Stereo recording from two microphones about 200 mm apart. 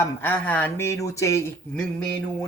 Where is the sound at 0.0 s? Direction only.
10° left (ahead or behind).